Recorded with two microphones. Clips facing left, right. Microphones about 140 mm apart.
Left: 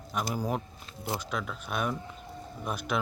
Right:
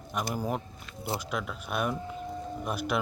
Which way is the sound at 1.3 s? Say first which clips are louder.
Right 1 dB; 5° right (ahead or behind).